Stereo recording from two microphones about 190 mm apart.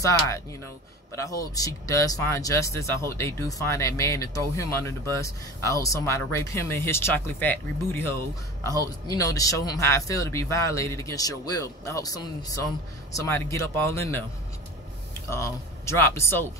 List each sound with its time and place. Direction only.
0.0 s speech: 15° left (ahead or behind)
15.2 s speech: 15° left (ahead or behind)